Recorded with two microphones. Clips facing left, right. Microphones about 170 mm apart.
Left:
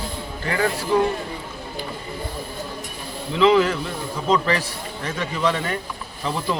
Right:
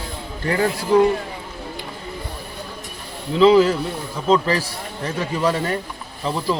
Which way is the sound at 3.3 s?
35° right (ahead or behind).